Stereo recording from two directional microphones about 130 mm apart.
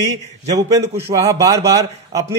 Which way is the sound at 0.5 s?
25° right (ahead or behind).